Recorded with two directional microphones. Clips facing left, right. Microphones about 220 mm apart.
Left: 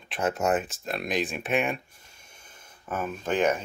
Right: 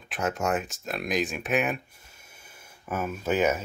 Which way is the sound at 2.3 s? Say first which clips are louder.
Right 1 dB; 10° right (ahead or behind).